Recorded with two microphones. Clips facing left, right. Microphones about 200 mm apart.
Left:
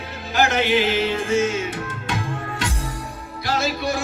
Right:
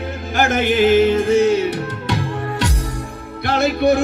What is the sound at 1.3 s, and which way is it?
Music, 65° right (ahead or behind).